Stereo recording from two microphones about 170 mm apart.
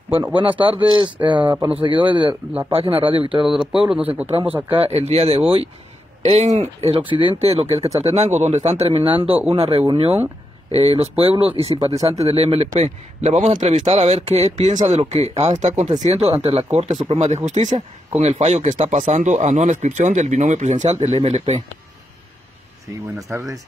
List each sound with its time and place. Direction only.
0.4 s speech: 30° right (ahead or behind)
3.7 s speech: 5° right (ahead or behind)
4.7 s speech: 35° right (ahead or behind)
23.3 s speech: 15° right (ahead or behind)